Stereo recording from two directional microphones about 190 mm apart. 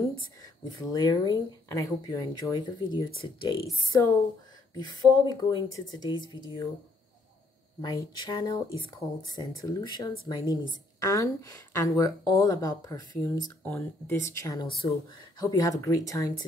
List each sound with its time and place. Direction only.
0.4 s speech: 20° left (ahead or behind)
7.8 s a woman's voice: 20° left (ahead or behind)